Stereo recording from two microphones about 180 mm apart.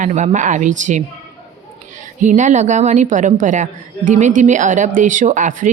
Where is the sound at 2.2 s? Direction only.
45° right (ahead or behind).